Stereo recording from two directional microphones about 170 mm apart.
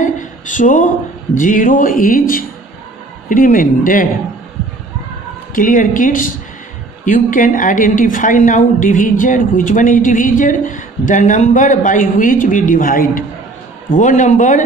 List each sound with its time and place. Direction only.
0.0 s a woman's voice: 50° left (ahead or behind)
5.5 s a woman's voice: 55° left (ahead or behind)